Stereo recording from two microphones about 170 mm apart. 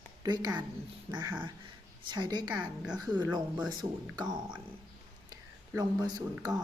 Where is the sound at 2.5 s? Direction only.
5° right (ahead or behind).